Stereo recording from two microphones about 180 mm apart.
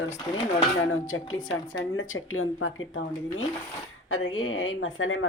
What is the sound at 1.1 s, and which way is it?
A woman's voice, 90° left.